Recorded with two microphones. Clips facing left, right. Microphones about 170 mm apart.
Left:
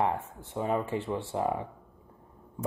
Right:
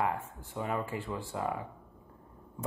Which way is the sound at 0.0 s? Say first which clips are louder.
Left 3 dB; 25° left (ahead or behind).